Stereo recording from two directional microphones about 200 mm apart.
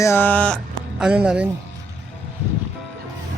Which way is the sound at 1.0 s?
5° right (ahead or behind).